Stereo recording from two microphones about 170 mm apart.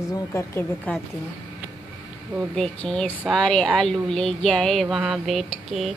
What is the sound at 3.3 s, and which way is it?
Speech, 5° left (ahead or behind).